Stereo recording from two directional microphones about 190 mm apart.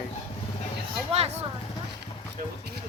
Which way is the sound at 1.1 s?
35° right (ahead or behind).